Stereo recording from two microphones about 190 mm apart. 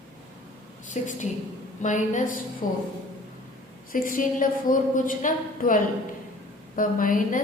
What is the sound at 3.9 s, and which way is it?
A woman's voice, 45° left (ahead or behind).